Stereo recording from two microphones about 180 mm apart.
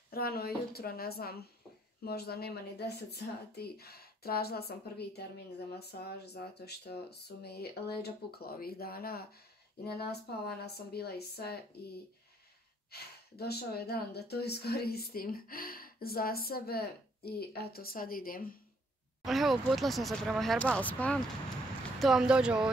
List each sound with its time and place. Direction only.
0.1 s speech: 60° left (ahead or behind)
19.2 s speech: centre (ahead or behind)